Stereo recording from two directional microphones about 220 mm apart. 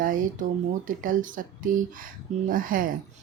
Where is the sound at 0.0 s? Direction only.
40° right (ahead or behind).